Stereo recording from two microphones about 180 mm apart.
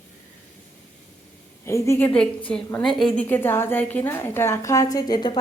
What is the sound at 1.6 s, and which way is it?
Speech, 15° left (ahead or behind).